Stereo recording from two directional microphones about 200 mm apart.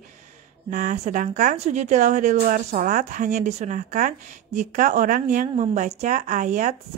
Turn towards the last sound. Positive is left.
turn(degrees=-40)  # may be behind; listen again after turning